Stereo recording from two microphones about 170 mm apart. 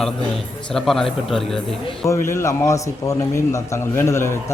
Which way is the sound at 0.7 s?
Centre (ahead or behind).